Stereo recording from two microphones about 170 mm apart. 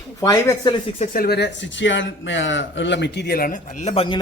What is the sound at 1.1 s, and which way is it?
A man's voice, 65° left (ahead or behind).